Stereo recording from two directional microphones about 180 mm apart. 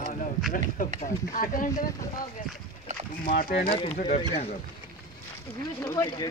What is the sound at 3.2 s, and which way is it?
Speech, 50° left (ahead or behind).